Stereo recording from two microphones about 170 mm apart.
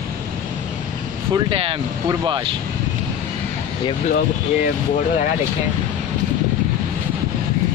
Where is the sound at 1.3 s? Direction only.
30° right (ahead or behind).